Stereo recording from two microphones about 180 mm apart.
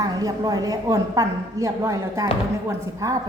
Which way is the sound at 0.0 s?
20° right (ahead or behind).